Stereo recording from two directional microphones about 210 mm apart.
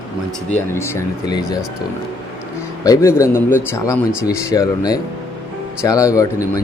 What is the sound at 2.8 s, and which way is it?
A man's voice, 15° left (ahead or behind).